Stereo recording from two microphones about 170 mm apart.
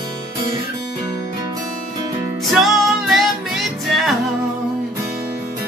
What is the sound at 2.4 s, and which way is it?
Music, centre (ahead or behind).